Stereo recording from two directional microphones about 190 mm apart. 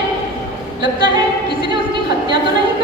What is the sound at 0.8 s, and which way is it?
A capella, 25° right (ahead or behind).